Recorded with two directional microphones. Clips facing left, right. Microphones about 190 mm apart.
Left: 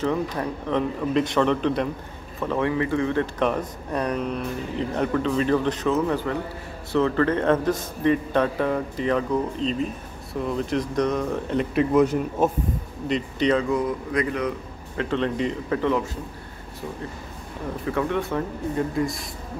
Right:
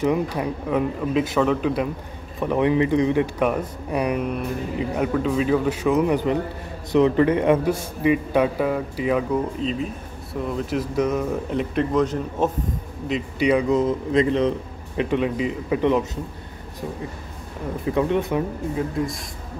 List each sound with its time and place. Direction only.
0.0 s speech: 10° right (ahead or behind)
2.4 s speech: 15° right (ahead or behind); by 12.4 s 10° left (ahead or behind)
13.1 s speech: 10° right (ahead or behind); by 14.5 s 25° right (ahead or behind)
15.0 s speech: 10° right (ahead or behind)
15.8 s speech: 20° right (ahead or behind)
17.8 s speech: 20° right (ahead or behind)
18.8 s speech: centre (ahead or behind)